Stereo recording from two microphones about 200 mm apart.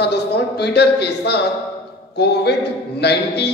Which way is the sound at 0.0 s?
55° left (ahead or behind).